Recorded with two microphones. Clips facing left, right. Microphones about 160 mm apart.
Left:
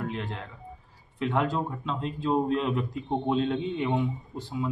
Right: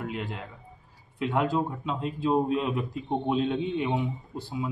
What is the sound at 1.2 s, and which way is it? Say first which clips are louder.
A man's voice: right 1 dB; 10° right (ahead or behind).